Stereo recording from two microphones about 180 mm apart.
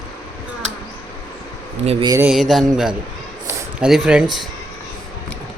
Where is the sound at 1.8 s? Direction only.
35° right (ahead or behind).